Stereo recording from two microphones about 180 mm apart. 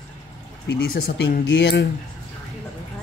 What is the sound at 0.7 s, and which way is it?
A man's voice, 75° left (ahead or behind).